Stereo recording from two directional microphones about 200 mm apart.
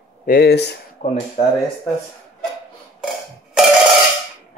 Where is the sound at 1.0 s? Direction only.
40° left (ahead or behind).